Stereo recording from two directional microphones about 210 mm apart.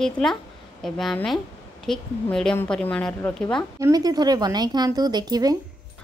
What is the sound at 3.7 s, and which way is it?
Speech, 15° right (ahead or behind).